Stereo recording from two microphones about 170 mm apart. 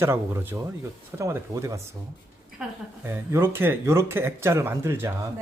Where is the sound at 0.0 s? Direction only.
15° right (ahead or behind).